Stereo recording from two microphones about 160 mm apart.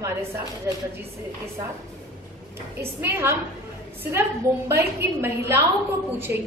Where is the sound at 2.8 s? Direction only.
15° right (ahead or behind).